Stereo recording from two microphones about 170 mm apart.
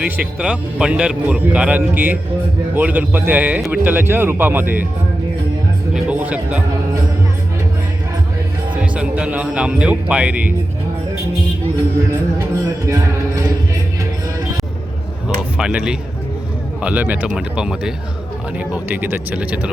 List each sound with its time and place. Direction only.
0.0 s a man's voice: 5° right (ahead or behind)
5.9 s music: 10° right (ahead or behind)
8.8 s a man's voice: 5° right (ahead or behind)
12.8 s a man's voice: 15° right (ahead or behind)
15.4 s a man's voice: 5° right (ahead or behind)